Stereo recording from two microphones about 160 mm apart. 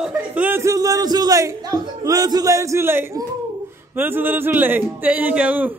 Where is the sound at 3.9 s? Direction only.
15° right (ahead or behind).